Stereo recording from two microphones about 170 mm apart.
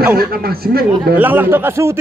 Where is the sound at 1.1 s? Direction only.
10° right (ahead or behind).